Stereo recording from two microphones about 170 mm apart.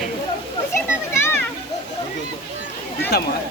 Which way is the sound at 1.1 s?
15° left (ahead or behind).